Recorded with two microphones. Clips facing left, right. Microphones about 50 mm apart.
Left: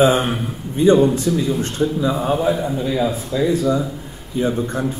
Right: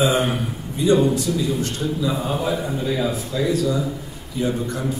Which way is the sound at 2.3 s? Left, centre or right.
Centre.